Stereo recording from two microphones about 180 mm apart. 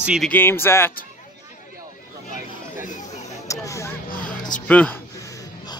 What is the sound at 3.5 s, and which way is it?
Vehicle, 15° left (ahead or behind).